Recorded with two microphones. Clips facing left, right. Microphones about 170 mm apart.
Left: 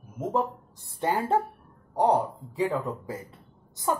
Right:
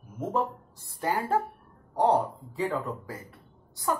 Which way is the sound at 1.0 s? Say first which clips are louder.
Left 2 dB; 25° left (ahead or behind).